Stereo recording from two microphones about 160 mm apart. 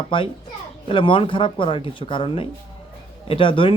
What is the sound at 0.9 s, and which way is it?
Speech, 30° left (ahead or behind).